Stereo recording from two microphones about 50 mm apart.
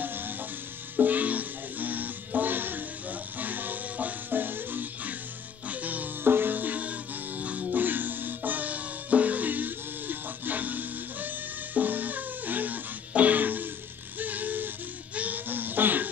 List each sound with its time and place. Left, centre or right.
0.0 s music: right
6.2 s music: right
14.1 s a sound: right